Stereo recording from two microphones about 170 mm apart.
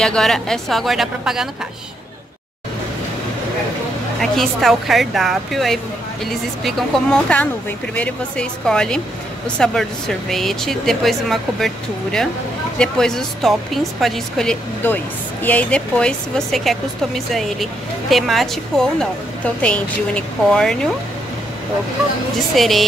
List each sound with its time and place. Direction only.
0.0 s a woman's voice: 5° left (ahead or behind)
4.2 s a woman's voice: centre (ahead or behind)
22.6 s a woman's voice: centre (ahead or behind)